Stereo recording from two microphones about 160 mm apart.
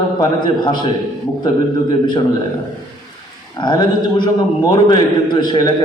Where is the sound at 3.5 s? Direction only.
30° left (ahead or behind).